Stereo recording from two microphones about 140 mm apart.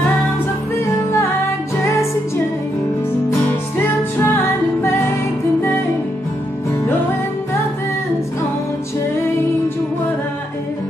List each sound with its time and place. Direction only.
3.3 s music: 15° left (ahead or behind)